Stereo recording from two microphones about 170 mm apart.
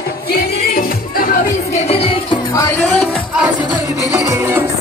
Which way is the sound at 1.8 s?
35° left (ahead or behind).